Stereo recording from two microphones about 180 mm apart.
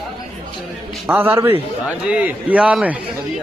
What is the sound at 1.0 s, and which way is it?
A man's voice, 10° right (ahead or behind).